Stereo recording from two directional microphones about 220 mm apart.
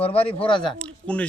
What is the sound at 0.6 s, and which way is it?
Speech, 5° left (ahead or behind).